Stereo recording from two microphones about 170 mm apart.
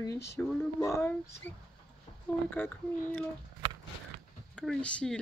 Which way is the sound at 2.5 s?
10° left (ahead or behind).